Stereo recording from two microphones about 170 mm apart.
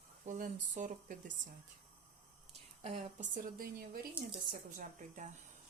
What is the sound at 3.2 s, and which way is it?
A woman's voice, 55° right (ahead or behind).